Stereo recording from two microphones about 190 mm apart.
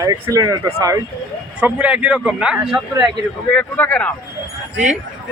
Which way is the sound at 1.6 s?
5° right (ahead or behind).